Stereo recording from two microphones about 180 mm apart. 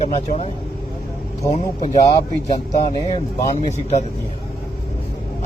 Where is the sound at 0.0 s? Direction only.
35° left (ahead or behind).